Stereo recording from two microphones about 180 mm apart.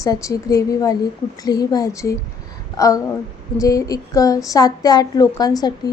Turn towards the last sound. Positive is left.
turn(degrees=20)  # may be behind; listen again after turning